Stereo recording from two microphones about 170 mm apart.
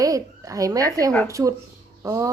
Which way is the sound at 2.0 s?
20° right (ahead or behind).